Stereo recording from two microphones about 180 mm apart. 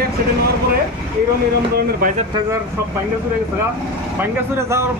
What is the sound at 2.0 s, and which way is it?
Speech, 55° right (ahead or behind).